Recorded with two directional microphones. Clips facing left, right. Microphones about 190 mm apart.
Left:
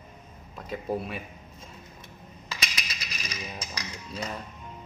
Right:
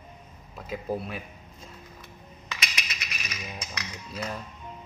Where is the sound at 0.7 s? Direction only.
Centre (ahead or behind).